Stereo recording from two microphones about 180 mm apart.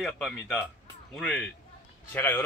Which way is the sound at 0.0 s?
5° left (ahead or behind).